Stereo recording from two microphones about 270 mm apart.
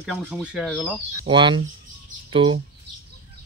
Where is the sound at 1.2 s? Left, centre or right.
Centre.